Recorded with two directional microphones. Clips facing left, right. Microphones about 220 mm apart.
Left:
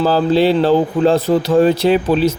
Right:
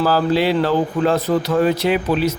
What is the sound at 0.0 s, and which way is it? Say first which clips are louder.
Speech: left 4 dB; 25° left (ahead or behind).